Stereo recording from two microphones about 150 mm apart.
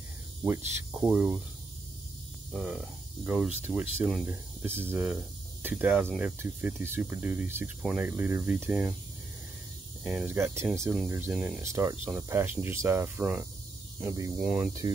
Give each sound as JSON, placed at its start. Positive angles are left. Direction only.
{"t": 0.4, "sound": "speech", "side_deg": -15}
{"t": 2.5, "sound": "speech", "side_deg": -5}
{"t": 10.0, "sound": "speech", "side_deg": -15}
{"t": 11.3, "sound": "speech", "side_deg": -5}
{"t": 11.6, "sound": "speech", "side_deg": -20}
{"t": 14.0, "sound": "speech", "side_deg": -25}
{"t": 14.4, "sound": "speech", "side_deg": -5}